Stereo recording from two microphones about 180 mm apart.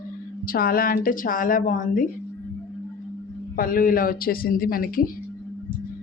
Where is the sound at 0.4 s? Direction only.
55° left (ahead or behind).